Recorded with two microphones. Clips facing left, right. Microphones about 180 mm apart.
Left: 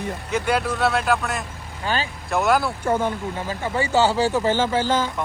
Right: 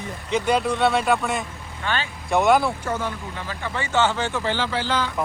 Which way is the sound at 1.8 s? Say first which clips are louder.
Left 2 dB; 35° left (ahead or behind).